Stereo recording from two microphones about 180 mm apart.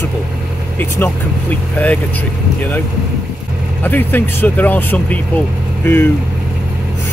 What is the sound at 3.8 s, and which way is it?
Speech, 10° left (ahead or behind).